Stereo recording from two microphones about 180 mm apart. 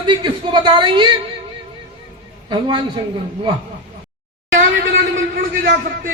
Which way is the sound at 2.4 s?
25° right (ahead or behind).